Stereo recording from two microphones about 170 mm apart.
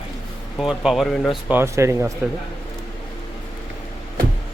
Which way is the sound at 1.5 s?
15° right (ahead or behind).